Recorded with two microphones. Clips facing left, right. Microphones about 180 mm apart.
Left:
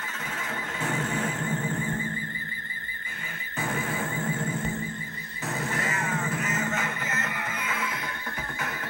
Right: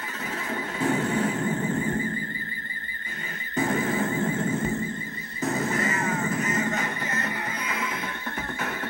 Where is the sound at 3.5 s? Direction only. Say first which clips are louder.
Right 6 dB; 40° right (ahead or behind).